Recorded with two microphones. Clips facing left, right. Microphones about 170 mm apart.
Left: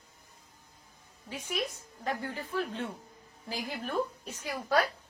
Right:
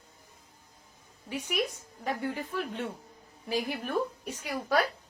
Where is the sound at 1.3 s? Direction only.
15° right (ahead or behind).